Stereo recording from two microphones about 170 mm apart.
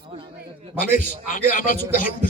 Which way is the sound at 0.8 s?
50° left (ahead or behind).